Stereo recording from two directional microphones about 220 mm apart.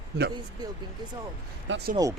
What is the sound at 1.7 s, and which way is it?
Speech, 55° right (ahead or behind).